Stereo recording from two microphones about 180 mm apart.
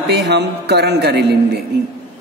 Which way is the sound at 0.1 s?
70° right (ahead or behind).